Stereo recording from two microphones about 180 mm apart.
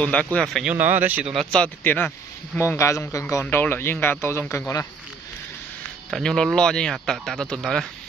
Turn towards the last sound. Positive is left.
turn(degrees=0)  # may be behind; listen again after turning